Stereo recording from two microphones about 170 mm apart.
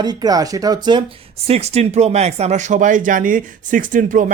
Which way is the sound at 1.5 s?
40° right (ahead or behind).